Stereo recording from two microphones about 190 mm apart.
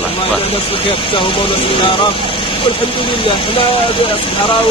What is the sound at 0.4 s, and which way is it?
Speech, 30° left (ahead or behind).